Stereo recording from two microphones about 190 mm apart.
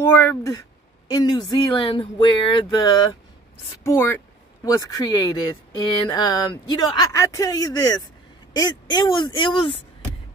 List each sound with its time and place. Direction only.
0.0 s speech: 10° left (ahead or behind)